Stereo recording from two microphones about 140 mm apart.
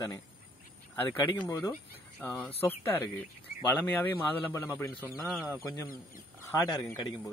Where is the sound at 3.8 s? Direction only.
10° left (ahead or behind).